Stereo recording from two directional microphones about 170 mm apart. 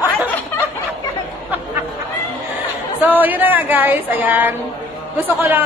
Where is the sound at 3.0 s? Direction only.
10° right (ahead or behind).